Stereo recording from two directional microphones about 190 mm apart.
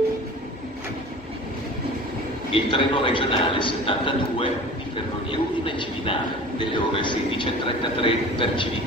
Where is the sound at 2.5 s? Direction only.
25° left (ahead or behind).